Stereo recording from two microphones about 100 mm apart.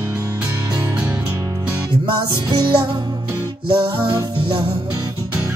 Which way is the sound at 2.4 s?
45° right (ahead or behind).